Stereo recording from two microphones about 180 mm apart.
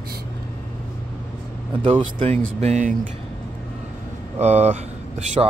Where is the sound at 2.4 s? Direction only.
40° right (ahead or behind).